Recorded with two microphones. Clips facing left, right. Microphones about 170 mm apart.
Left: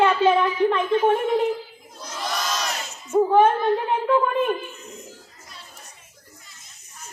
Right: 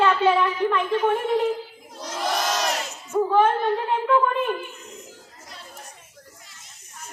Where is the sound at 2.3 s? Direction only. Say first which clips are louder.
Right 3 dB; 55° right (ahead or behind).